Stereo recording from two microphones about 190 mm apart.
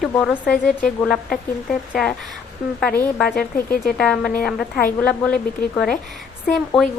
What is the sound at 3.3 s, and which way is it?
Speech, 50° left (ahead or behind).